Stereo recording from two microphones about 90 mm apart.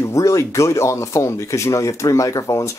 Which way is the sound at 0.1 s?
35° left (ahead or behind).